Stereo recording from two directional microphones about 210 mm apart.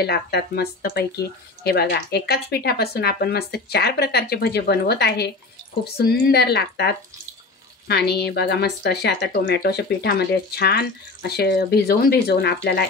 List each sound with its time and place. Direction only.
0.0 s speech: 50° left (ahead or behind)
7.9 s speech: 50° left (ahead or behind)